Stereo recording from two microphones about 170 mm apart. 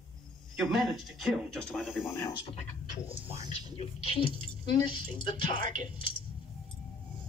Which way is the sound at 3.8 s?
30° left (ahead or behind).